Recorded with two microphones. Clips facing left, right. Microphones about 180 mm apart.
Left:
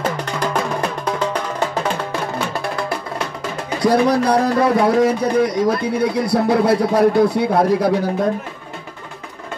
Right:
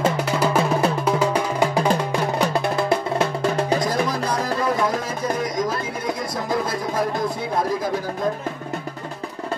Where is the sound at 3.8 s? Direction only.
70° left (ahead or behind).